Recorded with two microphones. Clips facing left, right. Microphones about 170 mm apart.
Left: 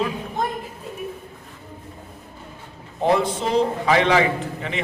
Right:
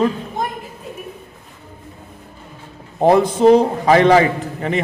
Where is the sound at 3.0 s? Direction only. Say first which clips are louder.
Right 7 dB; 45° right (ahead or behind).